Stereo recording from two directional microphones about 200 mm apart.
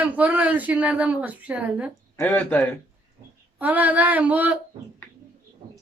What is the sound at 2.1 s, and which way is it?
Speech, 10° left (ahead or behind).